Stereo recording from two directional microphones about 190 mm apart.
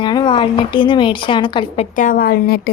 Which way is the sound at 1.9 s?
45° left (ahead or behind).